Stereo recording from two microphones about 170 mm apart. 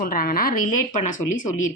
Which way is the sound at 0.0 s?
55° left (ahead or behind).